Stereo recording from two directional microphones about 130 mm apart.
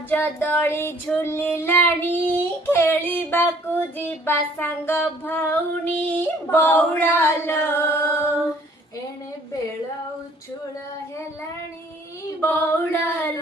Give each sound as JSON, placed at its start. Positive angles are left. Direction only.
{"t": 0.1, "sound": "child singing", "side_deg": 15}
{"t": 12.4, "sound": "child singing", "side_deg": 15}